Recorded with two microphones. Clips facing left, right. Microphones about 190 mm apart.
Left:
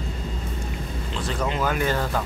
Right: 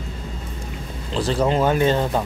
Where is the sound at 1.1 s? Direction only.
30° right (ahead or behind).